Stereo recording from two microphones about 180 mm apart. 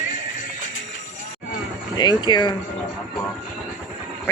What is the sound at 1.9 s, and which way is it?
Speech, 25° left (ahead or behind).